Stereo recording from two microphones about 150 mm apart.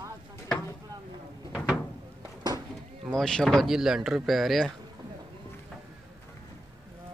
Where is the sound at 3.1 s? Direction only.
5° left (ahead or behind).